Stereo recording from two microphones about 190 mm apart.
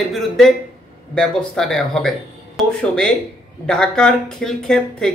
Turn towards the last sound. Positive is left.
turn(degrees=5)  # may be behind; listen again after turning